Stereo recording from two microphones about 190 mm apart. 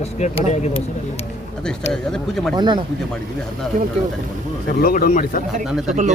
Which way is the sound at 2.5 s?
25° right (ahead or behind).